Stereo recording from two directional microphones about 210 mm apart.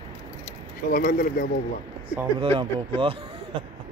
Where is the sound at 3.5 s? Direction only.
25° right (ahead or behind).